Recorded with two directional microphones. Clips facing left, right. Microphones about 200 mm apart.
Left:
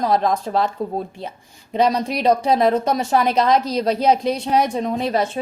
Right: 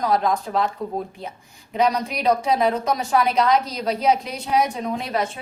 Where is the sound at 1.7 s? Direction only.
30° left (ahead or behind).